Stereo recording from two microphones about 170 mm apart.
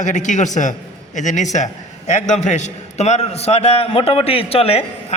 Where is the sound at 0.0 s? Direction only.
45° left (ahead or behind).